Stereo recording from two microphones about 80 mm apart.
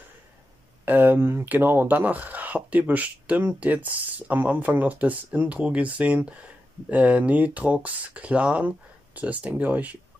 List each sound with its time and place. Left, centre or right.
0.8 s speech: right